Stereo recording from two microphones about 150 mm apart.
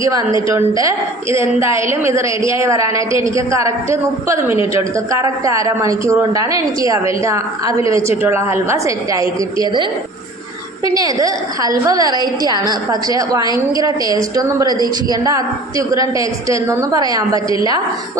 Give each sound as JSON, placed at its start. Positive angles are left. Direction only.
{"t": 0.0, "sound": "a woman's voice", "side_deg": -25}
{"t": 10.9, "sound": "a woman's voice", "side_deg": -25}